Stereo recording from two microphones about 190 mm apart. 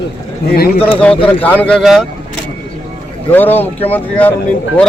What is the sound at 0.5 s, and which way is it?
Speech, 55° left (ahead or behind).